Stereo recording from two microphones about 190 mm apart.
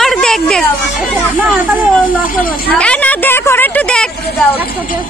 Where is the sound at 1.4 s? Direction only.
5° right (ahead or behind).